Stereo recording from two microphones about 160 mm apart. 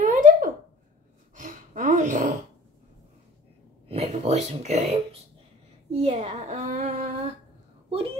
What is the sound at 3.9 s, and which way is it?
Speech, 40° right (ahead or behind).